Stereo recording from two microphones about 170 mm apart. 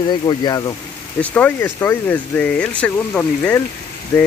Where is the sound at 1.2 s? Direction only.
10° left (ahead or behind).